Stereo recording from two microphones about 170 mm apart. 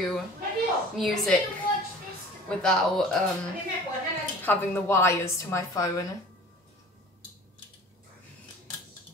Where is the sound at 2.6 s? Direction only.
5° left (ahead or behind).